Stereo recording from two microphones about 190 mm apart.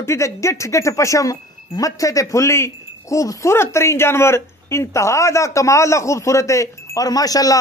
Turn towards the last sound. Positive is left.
turn(degrees=20)  # may be behind; listen again after turning